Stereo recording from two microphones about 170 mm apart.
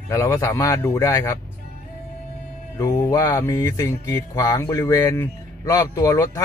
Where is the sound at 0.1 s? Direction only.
15° left (ahead or behind).